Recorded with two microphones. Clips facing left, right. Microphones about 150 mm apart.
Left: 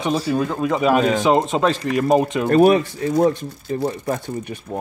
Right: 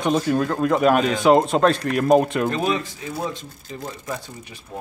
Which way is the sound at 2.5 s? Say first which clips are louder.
Left 9 dB; 55° left (ahead or behind).